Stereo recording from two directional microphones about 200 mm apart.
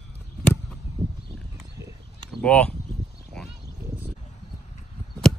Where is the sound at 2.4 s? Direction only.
5° left (ahead or behind).